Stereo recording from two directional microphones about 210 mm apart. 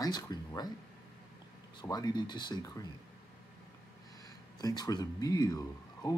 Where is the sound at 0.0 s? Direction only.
20° left (ahead or behind).